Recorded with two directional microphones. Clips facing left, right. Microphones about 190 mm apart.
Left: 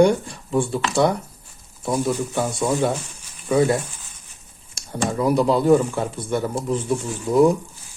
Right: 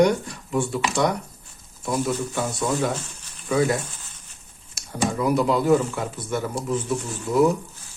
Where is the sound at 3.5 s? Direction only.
30° left (ahead or behind).